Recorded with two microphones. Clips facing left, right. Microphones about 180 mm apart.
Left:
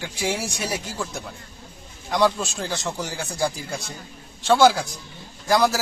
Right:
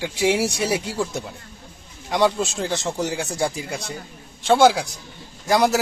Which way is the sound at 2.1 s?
20° right (ahead or behind).